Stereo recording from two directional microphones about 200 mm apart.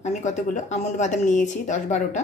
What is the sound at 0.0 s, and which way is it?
Speech, 35° left (ahead or behind).